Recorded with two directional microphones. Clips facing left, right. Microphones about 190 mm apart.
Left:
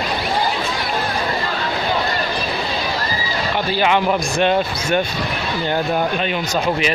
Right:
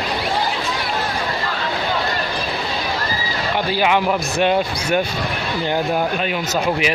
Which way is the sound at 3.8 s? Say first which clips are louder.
Left 1 dB; 10° right (ahead or behind).